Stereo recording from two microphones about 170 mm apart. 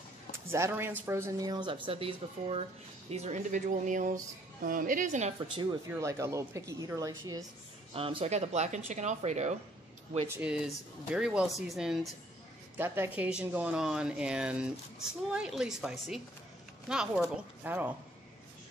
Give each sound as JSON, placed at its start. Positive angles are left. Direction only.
{"t": 0.5, "sound": "speech", "side_deg": -15}
{"t": 5.9, "sound": "speech", "side_deg": -15}
{"t": 7.9, "sound": "speech", "side_deg": -35}
{"t": 10.2, "sound": "speech", "side_deg": -10}
{"t": 12.7, "sound": "speech", "side_deg": -10}